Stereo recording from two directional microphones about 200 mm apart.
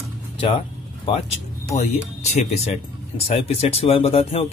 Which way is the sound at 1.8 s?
35° left (ahead or behind).